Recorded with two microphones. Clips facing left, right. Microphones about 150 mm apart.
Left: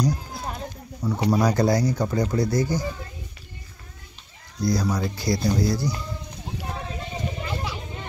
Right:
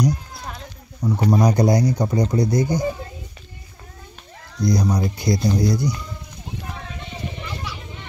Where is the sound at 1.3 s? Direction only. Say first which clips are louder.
Right 3 dB; 15° right (ahead or behind).